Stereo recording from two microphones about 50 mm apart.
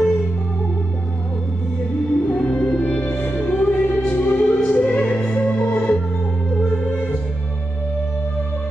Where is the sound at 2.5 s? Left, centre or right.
Centre.